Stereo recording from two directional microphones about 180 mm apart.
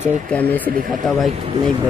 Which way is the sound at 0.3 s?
10° left (ahead or behind).